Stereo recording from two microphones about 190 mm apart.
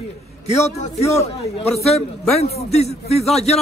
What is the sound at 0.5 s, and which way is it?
Speech, 35° left (ahead or behind).